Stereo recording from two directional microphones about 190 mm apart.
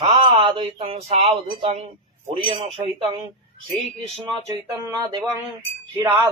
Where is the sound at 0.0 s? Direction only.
30° right (ahead or behind).